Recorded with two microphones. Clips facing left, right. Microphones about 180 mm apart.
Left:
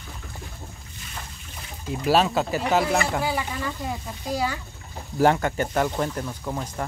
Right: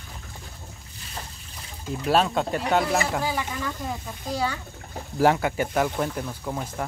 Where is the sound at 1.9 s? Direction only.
Centre (ahead or behind).